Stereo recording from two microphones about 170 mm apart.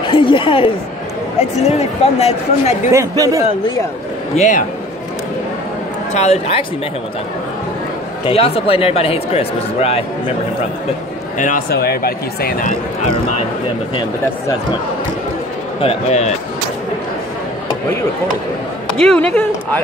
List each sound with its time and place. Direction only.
0.1 s a woman's voice: 30° left (ahead or behind)
2.9 s speech: 20° right (ahead or behind)
4.4 s a man's voice: 45° left (ahead or behind)
6.1 s speech: 40° left (ahead or behind)
8.3 s speech: 35° left (ahead or behind)
11.3 s a man's voice: 45° left (ahead or behind)
11.7 s speech: 65° left (ahead or behind)
15.8 s speech: 40° left (ahead or behind)
18.9 s speech: 5° left (ahead or behind)